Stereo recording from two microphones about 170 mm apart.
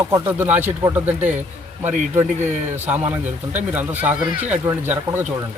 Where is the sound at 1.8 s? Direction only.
50° right (ahead or behind).